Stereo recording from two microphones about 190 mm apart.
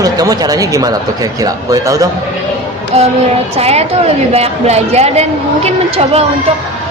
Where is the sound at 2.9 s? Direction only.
35° right (ahead or behind).